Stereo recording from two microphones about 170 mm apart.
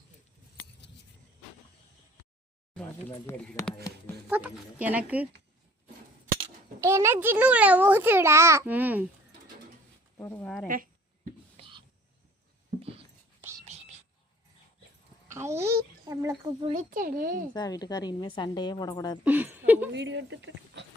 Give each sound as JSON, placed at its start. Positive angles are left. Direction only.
{"t": 3.2, "sound": "speech", "side_deg": 15}
{"t": 4.3, "sound": "a child's voice", "side_deg": -10}
{"t": 6.8, "sound": "a child's voice", "side_deg": -15}
{"t": 10.2, "sound": "speech", "side_deg": 10}
{"t": 11.5, "sound": "whispering", "side_deg": -30}
{"t": 13.4, "sound": "whispering", "side_deg": -10}
{"t": 15.3, "sound": "a child's voice", "side_deg": -15}
{"t": 16.6, "sound": "a child's voice", "side_deg": -35}
{"t": 16.9, "sound": "a child's voice", "side_deg": -55}
{"t": 17.5, "sound": "a woman's voice", "side_deg": 25}
{"t": 19.2, "sound": "a child's voice", "side_deg": -10}
{"t": 19.9, "sound": "speech", "side_deg": -90}